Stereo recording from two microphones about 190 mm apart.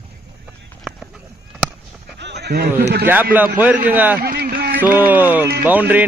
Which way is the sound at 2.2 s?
60° right (ahead or behind).